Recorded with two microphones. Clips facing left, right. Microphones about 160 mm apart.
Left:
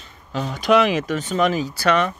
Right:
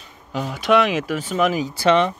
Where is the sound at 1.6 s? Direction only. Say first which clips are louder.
Right 2 dB; 20° right (ahead or behind).